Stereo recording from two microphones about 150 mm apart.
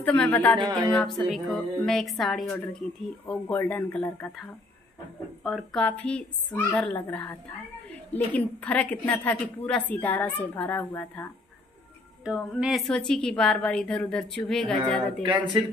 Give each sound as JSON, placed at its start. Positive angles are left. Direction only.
{"t": 0.0, "sound": "a woman's voice", "side_deg": 10}
{"t": 0.6, "sound": "a sound", "side_deg": -30}
{"t": 0.9, "sound": "a woman's voice", "side_deg": 5}
{"t": 5.4, "sound": "a woman's voice", "side_deg": 0}
{"t": 12.3, "sound": "a woman's voice", "side_deg": 0}
{"t": 15.2, "sound": "speech", "side_deg": -30}